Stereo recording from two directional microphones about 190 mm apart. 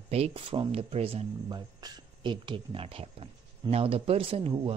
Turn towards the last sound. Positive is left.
turn(degrees=-30)  # may be behind; listen again after turning